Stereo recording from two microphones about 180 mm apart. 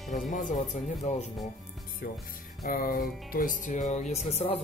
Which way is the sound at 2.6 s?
55° left (ahead or behind).